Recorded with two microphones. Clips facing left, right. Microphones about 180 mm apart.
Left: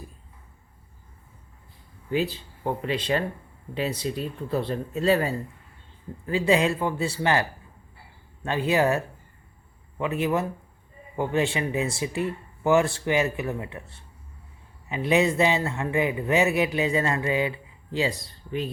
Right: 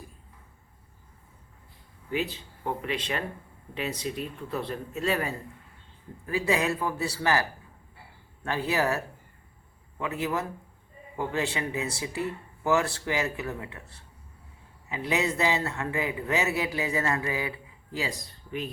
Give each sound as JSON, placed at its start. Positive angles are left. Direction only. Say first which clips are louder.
{"t": 2.1, "sound": "a man's voice", "louder": "left 4 dB", "side_deg": 35}
{"t": 8.4, "sound": "a man's voice", "louder": "left 5 dB", "side_deg": 20}
{"t": 10.0, "sound": "a man's voice", "louder": "left 5 dB", "side_deg": 25}
{"t": 14.8, "sound": "a man's voice", "louder": "left 6 dB", "side_deg": 20}